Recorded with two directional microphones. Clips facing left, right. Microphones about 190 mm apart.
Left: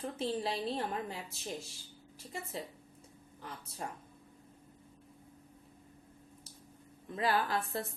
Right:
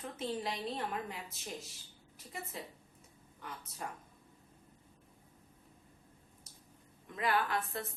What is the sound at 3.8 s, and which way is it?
Speech, 30° left (ahead or behind).